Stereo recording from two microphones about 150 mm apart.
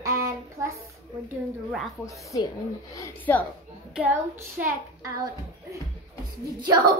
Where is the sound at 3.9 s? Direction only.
10° right (ahead or behind).